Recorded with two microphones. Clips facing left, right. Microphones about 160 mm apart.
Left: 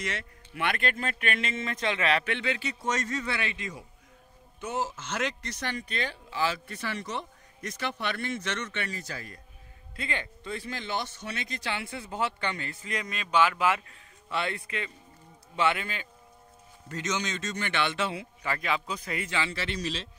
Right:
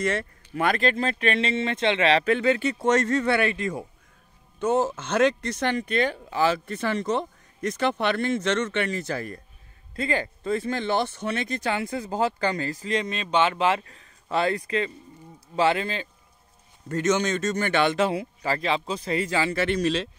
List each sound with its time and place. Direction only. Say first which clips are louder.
0.0 s speech: right 10 dB; 55° right (ahead or behind)
0.6 s speech: right 7 dB; 35° right (ahead or behind)
16.9 s speech: right 9 dB; 50° right (ahead or behind)